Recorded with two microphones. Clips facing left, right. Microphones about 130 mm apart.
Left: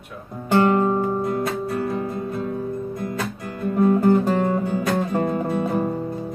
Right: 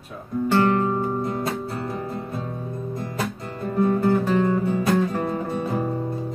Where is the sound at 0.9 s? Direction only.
20° left (ahead or behind).